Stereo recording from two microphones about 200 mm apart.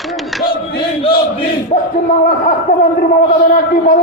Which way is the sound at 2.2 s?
45° left (ahead or behind).